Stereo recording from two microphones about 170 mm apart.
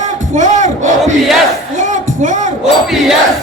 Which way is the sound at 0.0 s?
45° right (ahead or behind).